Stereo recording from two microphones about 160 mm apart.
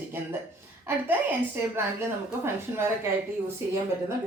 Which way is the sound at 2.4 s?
15° right (ahead or behind).